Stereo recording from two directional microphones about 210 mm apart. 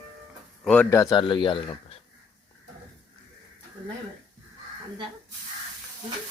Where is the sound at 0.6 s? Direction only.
5° left (ahead or behind); by 1.6 s 25° left (ahead or behind).